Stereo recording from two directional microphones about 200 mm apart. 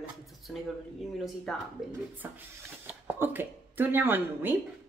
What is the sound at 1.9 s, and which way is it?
Speech, 10° right (ahead or behind).